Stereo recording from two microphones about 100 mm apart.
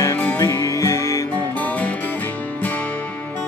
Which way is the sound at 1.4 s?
15° left (ahead or behind).